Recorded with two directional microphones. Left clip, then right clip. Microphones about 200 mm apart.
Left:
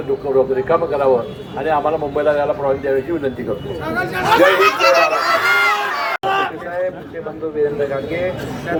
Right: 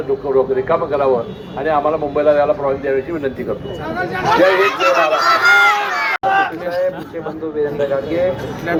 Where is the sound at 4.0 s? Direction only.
40° left (ahead or behind).